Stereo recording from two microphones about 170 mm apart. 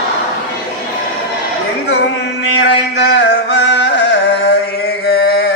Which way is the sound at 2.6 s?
90° left.